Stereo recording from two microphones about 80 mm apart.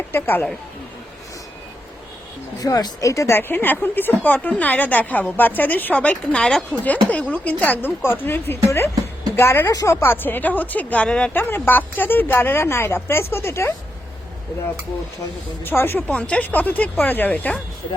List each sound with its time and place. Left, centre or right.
0.1 s speech: left
2.6 s speech: left
3.3 s speech: left
6.4 s speech: centre
6.8 s a woman's voice: centre
9.6 s speech: left; by 11.3 s centre
11.3 s speech: left
15.6 s speech: left
16.0 s speech: centre